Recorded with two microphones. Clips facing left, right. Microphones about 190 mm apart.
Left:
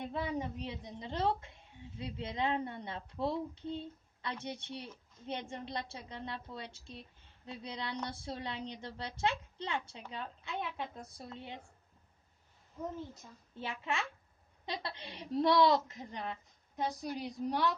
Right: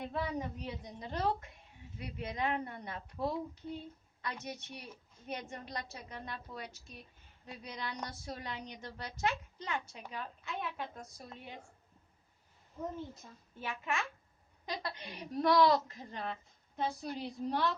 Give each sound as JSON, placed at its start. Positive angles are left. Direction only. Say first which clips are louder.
{"t": 0.1, "sound": "a woman's voice", "louder": "even", "side_deg": 25}
{"t": 13.6, "sound": "a woman's voice", "louder": "even", "side_deg": 30}